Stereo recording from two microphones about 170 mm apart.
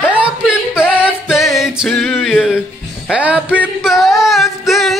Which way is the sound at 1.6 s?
Centre (ahead or behind).